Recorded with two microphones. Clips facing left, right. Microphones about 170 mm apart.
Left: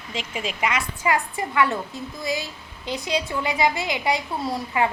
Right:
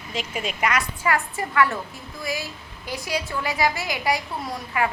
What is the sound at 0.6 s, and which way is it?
A woman's voice, 20° left (ahead or behind).